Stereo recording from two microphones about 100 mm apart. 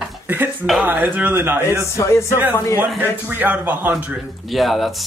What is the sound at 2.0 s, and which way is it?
Speech, 30° left (ahead or behind).